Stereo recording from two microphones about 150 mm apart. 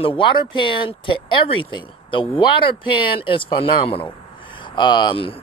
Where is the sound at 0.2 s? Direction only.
35° left (ahead or behind).